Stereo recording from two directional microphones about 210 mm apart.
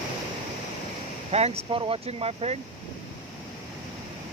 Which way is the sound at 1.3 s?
30° right (ahead or behind).